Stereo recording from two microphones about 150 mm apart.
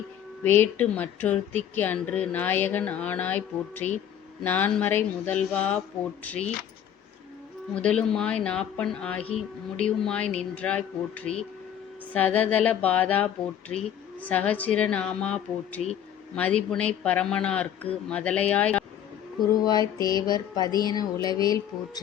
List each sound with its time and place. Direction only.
0.4 s speech: 10° left (ahead or behind)
7.8 s speech: 5° left (ahead or behind)
19.6 s speech: 25° left (ahead or behind)